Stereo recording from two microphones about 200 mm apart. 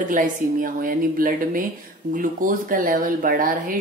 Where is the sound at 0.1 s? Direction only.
45° right (ahead or behind).